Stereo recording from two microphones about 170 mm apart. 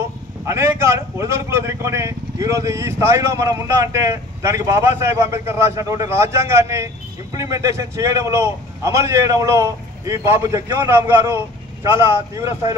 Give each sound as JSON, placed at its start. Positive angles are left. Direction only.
{"t": 0.5, "sound": "speech", "side_deg": -15}